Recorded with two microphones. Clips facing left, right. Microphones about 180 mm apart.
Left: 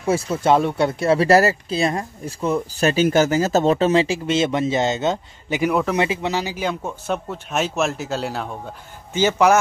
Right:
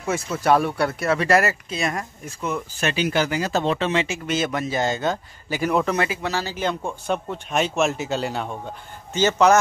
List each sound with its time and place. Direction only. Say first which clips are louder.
0.0 s speech: left 4 dB; 30° left (ahead or behind)
5.7 s speech: even; 5° left (ahead or behind)
5.9 s speech: left 3 dB; 20° left (ahead or behind); by 8.5 s centre (ahead or behind)
9.1 s a man's voice: left 1 dB; 10° left (ahead or behind)